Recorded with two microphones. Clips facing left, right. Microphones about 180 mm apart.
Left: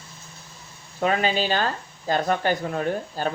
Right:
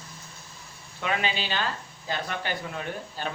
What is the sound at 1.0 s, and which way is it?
Speech, 40° left (ahead or behind).